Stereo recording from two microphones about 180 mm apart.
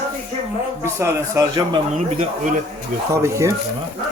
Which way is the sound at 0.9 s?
15° right (ahead or behind).